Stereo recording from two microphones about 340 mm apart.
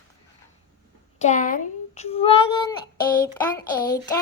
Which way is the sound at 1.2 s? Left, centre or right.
Left.